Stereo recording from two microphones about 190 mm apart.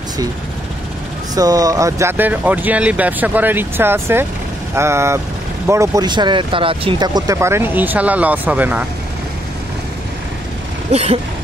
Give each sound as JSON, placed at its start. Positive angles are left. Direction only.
{"t": 1.3, "sound": "speech", "side_deg": -20}
{"t": 10.9, "sound": "speech", "side_deg": -35}